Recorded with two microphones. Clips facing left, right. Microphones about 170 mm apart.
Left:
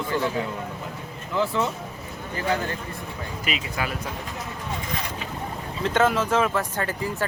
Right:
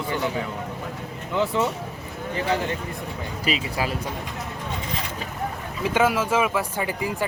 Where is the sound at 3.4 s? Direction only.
30° right (ahead or behind).